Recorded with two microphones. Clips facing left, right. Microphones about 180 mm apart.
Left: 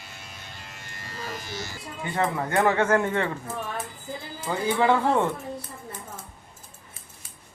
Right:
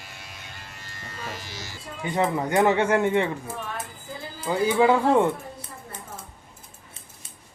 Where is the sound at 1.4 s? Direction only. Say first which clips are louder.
Left 4 dB; 55° left (ahead or behind).